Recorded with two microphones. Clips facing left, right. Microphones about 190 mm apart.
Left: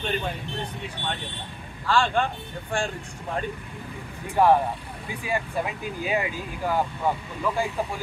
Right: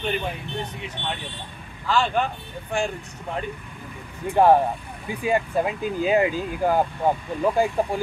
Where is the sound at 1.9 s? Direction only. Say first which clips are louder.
Right 1 dB; 5° right (ahead or behind).